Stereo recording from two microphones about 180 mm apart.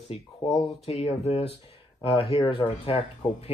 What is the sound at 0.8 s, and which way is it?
Speech, 35° left (ahead or behind).